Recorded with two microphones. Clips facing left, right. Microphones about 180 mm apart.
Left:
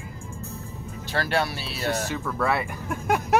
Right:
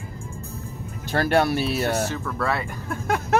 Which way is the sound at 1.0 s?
50° right (ahead or behind).